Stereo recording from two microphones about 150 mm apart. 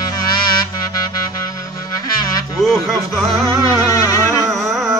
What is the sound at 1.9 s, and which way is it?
Music, 25° left (ahead or behind).